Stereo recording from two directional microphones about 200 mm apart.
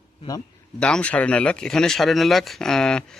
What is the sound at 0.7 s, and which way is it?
Speech, 5° left (ahead or behind).